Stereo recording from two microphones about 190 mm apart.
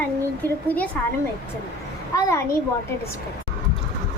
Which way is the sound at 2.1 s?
15° left (ahead or behind).